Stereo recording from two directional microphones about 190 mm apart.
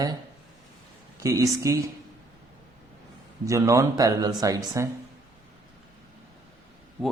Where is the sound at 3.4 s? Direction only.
15° right (ahead or behind).